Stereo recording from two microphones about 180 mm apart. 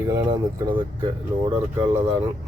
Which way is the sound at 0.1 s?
20° right (ahead or behind).